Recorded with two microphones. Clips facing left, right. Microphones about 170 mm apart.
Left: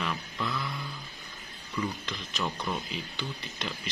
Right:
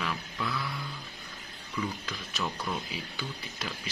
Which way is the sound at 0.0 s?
Centre (ahead or behind).